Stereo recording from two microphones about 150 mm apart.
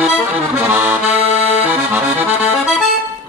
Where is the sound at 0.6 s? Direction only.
15° right (ahead or behind).